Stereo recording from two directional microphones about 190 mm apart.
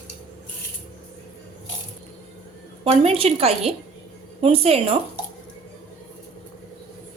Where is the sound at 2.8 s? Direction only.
30° right (ahead or behind).